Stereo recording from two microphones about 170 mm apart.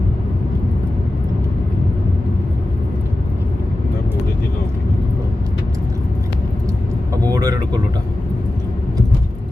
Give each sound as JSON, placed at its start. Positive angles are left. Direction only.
{"t": 7.2, "sound": "vehicle", "side_deg": -20}